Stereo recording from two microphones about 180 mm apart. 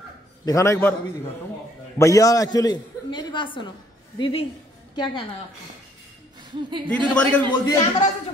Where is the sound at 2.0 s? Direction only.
20° left (ahead or behind).